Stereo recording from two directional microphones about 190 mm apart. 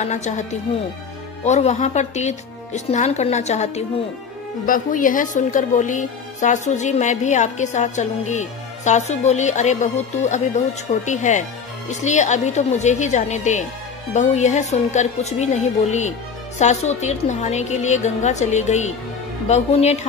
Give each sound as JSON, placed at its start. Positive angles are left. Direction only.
{"t": 0.0, "sound": "a woman's voice", "side_deg": 40}